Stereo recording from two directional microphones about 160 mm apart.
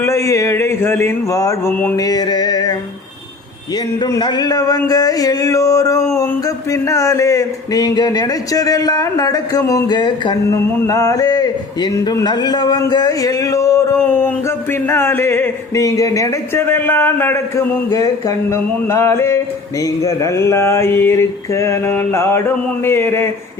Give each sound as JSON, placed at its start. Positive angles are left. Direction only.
{"t": 0.0, "sound": "a man's voice", "side_deg": 20}
{"t": 4.0, "sound": "a man's voice", "side_deg": 25}